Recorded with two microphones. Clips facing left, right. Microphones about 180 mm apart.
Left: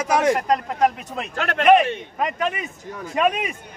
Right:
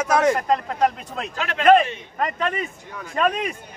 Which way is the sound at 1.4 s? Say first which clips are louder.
Left 4 dB; 60° left (ahead or behind).